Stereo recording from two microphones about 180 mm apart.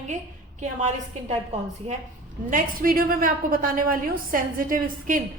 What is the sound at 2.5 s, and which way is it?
A woman's voice, 50° right (ahead or behind).